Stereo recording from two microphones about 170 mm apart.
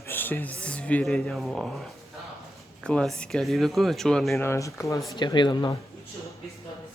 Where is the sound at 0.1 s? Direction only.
10° left (ahead or behind).